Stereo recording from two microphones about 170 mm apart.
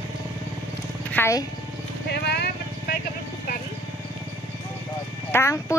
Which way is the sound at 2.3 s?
70° left (ahead or behind).